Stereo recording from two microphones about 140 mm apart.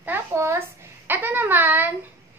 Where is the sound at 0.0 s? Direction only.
15° right (ahead or behind).